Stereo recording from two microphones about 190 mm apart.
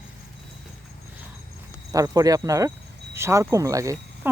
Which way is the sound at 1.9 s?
20° right (ahead or behind).